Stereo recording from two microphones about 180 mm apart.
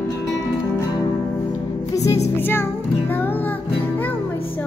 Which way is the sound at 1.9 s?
15° left (ahead or behind).